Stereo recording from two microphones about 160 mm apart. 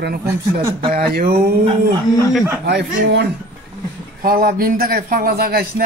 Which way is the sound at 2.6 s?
90° right.